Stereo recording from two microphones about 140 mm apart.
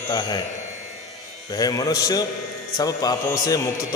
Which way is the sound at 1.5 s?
25° left (ahead or behind).